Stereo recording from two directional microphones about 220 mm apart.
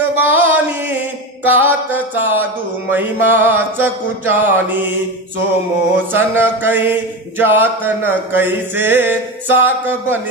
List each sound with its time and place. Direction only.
0.0 s mantra: 10° right (ahead or behind)
5.9 s mantra: 10° right (ahead or behind)